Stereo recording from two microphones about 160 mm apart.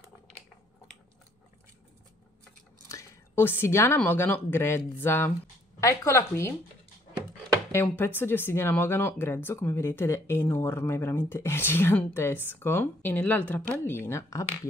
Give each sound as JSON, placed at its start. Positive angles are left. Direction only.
{"t": 2.9, "sound": "speech", "side_deg": 15}
{"t": 7.7, "sound": "speech", "side_deg": 15}